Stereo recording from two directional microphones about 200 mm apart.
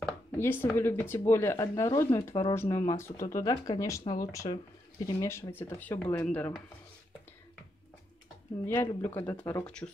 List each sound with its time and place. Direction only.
0.4 s speech: 10° left (ahead or behind)
8.6 s speech: 10° left (ahead or behind)